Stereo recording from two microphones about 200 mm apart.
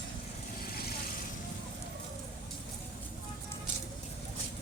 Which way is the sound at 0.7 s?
50° left (ahead or behind).